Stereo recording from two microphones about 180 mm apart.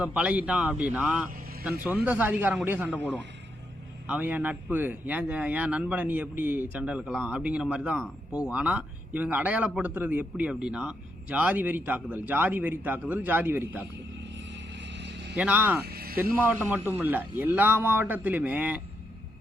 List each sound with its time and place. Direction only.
0.0 s speech: 5° right (ahead or behind)
3.0 s a man's voice: 10° left (ahead or behind)
4.0 s speech: 10° right (ahead or behind)
14.3 s vehicle: 85° right
15.4 s speech: 10° right (ahead or behind)
15.9 s a sound: 60° right (ahead or behind)
16.3 s speech: 10° right (ahead or behind)